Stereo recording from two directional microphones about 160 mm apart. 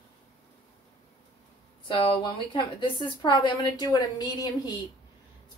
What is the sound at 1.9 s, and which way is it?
A woman's voice, 30° left (ahead or behind).